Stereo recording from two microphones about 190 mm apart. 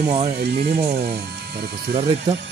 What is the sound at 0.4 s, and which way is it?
Speech, 55° right (ahead or behind).